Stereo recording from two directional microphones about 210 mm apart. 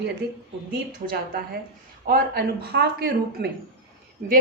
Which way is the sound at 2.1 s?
50° right (ahead or behind).